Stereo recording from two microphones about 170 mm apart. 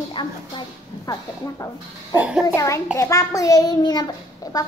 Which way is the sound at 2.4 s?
20° left (ahead or behind).